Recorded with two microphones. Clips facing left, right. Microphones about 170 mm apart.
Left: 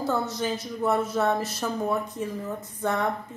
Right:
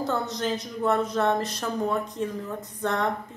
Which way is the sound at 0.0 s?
5° left (ahead or behind).